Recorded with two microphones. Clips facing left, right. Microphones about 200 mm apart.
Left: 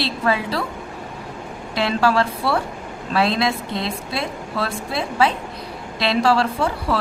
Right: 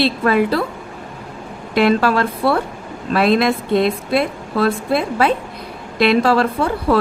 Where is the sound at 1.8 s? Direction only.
55° right (ahead or behind).